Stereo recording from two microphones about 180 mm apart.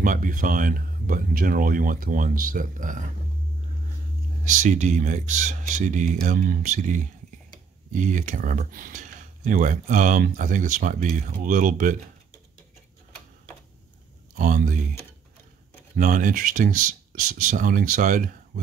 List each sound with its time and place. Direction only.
0.0 s speech: 45° right (ahead or behind)
4.5 s speech: 40° right (ahead or behind)
14.3 s speech: 45° right (ahead or behind)
16.0 s speech: 45° right (ahead or behind)